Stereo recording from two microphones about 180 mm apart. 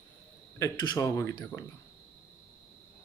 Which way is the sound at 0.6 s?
20° left (ahead or behind).